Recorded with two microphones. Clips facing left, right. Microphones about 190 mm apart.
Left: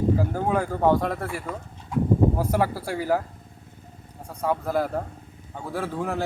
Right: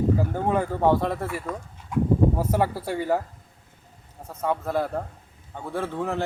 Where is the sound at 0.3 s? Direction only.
Centre (ahead or behind).